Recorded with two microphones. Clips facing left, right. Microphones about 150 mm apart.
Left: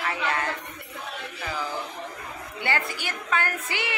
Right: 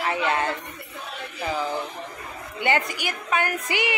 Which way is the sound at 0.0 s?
25° right (ahead or behind).